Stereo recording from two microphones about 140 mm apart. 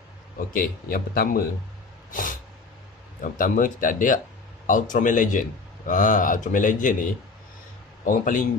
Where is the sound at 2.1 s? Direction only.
75° left (ahead or behind).